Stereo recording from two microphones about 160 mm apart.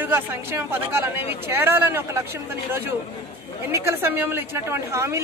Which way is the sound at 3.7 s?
15° right (ahead or behind).